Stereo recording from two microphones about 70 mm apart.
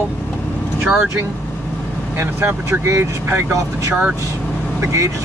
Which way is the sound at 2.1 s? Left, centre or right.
Right.